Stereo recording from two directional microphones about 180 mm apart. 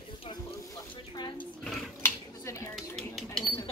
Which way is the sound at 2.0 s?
15° left (ahead or behind).